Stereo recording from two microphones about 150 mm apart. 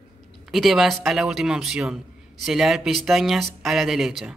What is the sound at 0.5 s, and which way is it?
Speech, centre (ahead or behind).